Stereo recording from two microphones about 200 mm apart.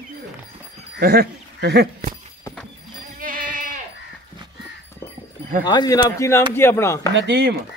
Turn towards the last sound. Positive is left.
turn(degrees=-55)  # may be behind; listen again after turning